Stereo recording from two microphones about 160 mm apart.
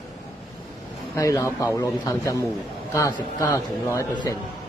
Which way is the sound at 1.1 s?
20° left (ahead or behind).